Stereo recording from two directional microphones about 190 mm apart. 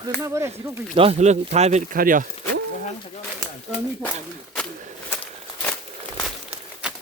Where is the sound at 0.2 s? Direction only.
15° right (ahead or behind).